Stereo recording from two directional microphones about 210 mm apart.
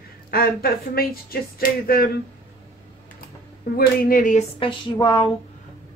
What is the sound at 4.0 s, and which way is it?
Speech, 40° left (ahead or behind).